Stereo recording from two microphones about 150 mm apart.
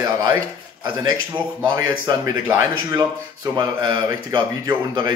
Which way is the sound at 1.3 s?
30° right (ahead or behind).